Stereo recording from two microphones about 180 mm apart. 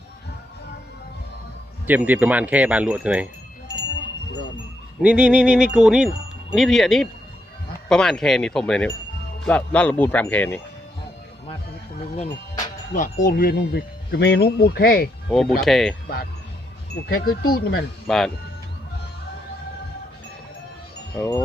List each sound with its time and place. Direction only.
1.9 s speech: 10° right (ahead or behind)
5.0 s music: 5° right (ahead or behind)
9.4 s speech: 5° left (ahead or behind)
12.9 s speech: 50° left (ahead or behind)
15.3 s music: centre (ahead or behind)
17.1 s speech: 55° left (ahead or behind)
18.1 s music: centre (ahead or behind)
21.2 s speech: 10° left (ahead or behind)